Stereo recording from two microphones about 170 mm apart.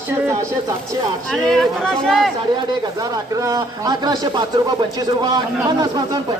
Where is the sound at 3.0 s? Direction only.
20° right (ahead or behind).